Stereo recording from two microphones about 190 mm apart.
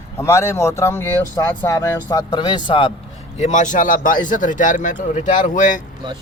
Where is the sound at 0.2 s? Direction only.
15° left (ahead or behind).